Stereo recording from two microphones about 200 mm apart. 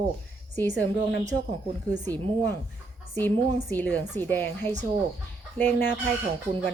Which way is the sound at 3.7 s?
10° left (ahead or behind).